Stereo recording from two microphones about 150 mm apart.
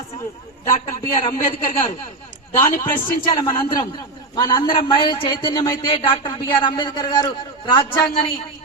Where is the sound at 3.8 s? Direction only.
25° left (ahead or behind).